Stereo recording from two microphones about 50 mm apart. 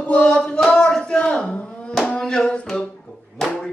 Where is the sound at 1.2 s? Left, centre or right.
Left.